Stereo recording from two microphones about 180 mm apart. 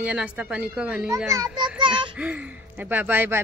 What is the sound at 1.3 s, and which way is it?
Speech, 20° right (ahead or behind).